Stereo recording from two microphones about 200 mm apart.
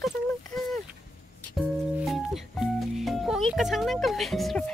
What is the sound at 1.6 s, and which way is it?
Music, centre (ahead or behind).